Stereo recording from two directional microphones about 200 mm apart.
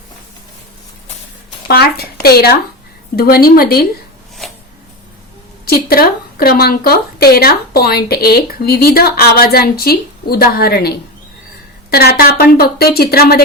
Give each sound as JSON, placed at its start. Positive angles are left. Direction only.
{"t": 1.6, "sound": "speech", "side_deg": 50}
{"t": 5.6, "sound": "speech", "side_deg": 50}